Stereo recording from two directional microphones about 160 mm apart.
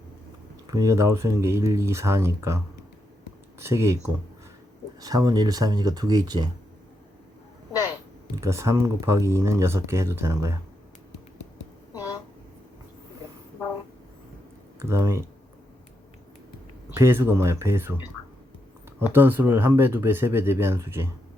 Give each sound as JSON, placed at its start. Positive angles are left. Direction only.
{"t": 0.7, "sound": "speech", "side_deg": -20}
{"t": 3.6, "sound": "speech", "side_deg": -15}
{"t": 8.4, "sound": "speech", "side_deg": -20}
{"t": 14.8, "sound": "speech", "side_deg": -15}
{"t": 16.9, "sound": "speech", "side_deg": -15}